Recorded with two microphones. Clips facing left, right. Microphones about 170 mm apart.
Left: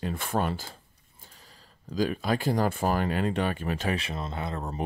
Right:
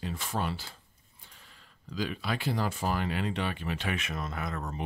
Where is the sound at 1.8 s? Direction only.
45° left (ahead or behind).